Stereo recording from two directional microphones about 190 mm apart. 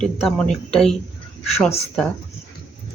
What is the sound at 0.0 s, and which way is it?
Speech, 5° left (ahead or behind).